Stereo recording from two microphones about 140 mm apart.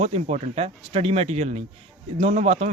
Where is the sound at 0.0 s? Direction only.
50° right (ahead or behind).